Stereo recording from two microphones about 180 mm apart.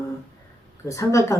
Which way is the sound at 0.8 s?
15° left (ahead or behind).